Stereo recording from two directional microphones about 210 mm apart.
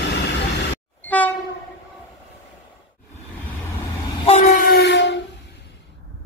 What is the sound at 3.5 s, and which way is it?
Train, 15° left (ahead or behind).